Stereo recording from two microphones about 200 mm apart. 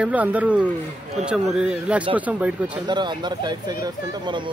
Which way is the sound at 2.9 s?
20° right (ahead or behind).